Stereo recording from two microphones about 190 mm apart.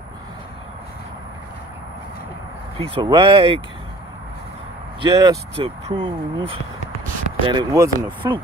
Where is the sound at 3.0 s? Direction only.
25° right (ahead or behind).